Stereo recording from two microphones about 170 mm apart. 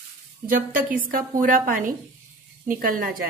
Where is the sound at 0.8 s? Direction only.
55° right (ahead or behind).